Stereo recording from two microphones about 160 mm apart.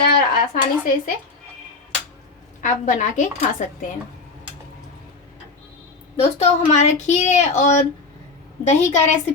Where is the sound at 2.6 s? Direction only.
50° left (ahead or behind).